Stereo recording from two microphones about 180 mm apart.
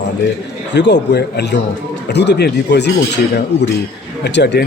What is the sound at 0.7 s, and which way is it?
Speech, 75° left (ahead or behind).